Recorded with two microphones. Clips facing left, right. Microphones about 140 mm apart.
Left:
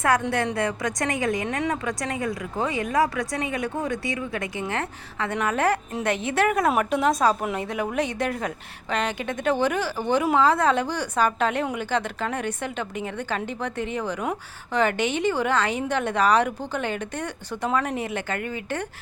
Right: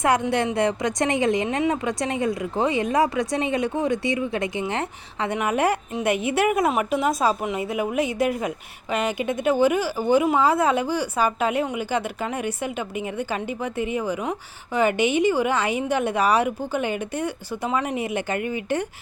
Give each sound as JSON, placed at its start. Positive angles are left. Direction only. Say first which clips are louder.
{"t": 0.0, "sound": "a woman's voice", "louder": "right 2 dB", "side_deg": -20}